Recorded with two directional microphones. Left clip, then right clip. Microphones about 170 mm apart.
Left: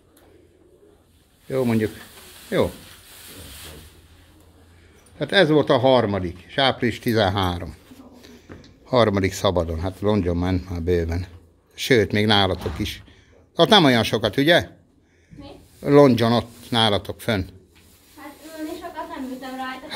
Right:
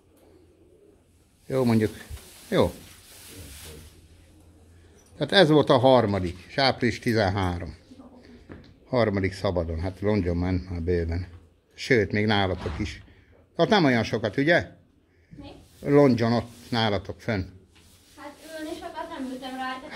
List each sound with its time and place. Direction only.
1.5 s speech: 15° right (ahead or behind)
5.1 s speech: 15° right (ahead or behind); by 7.7 s 5° left (ahead or behind)
8.5 s a sound: 5° right (ahead or behind)
8.8 s speech: 10° left (ahead or behind)
15.8 s speech: 10° left (ahead or behind)
18.2 s a sound: 15° right (ahead or behind)